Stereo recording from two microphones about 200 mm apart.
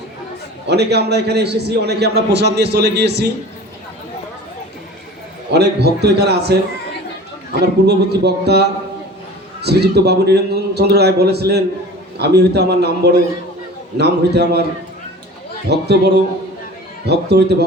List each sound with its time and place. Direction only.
0.7 s a man's voice: 55° right (ahead or behind)
5.5 s a man's voice: 55° right (ahead or behind)
7.6 s a man's voice: 55° right (ahead or behind)
15.7 s a man's voice: 55° right (ahead or behind)